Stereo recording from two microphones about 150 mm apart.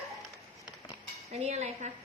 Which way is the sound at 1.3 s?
45° right (ahead or behind).